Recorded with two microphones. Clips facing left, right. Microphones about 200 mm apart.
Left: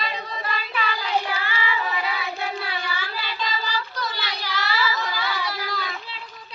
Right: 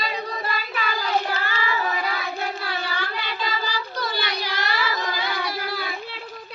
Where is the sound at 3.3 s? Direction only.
55° right (ahead or behind).